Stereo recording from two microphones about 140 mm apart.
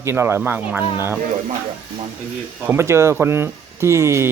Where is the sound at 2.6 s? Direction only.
20° right (ahead or behind).